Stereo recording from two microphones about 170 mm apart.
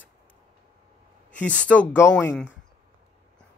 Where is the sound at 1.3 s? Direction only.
5° left (ahead or behind).